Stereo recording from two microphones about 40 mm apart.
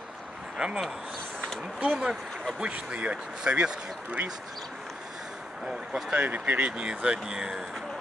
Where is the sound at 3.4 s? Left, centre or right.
Right.